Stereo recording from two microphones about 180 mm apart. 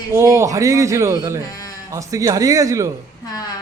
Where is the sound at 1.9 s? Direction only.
20° right (ahead or behind).